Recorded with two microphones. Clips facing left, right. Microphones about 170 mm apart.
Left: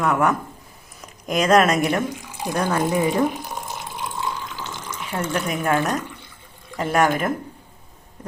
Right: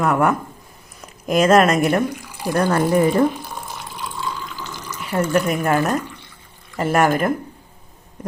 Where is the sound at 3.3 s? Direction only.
15° left (ahead or behind).